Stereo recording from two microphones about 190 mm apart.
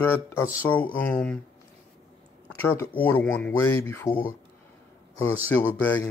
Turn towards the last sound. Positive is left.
turn(degrees=10)  # may be behind; listen again after turning